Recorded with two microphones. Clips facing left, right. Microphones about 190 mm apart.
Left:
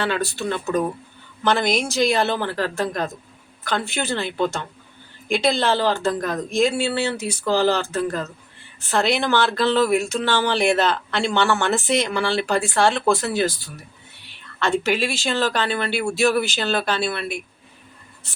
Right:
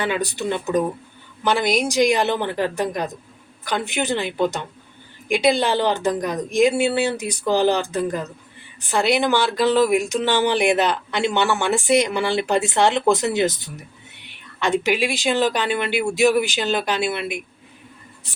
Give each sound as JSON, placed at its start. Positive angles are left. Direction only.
{"t": 0.0, "sound": "speech", "side_deg": -15}